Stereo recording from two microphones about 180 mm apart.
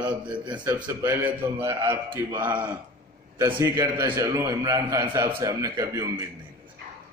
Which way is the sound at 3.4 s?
20° right (ahead or behind).